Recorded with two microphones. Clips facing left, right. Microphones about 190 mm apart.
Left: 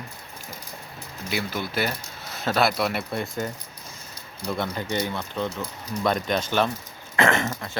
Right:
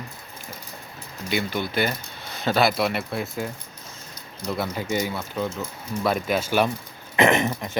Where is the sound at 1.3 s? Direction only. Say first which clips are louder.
Right 3 dB; centre (ahead or behind).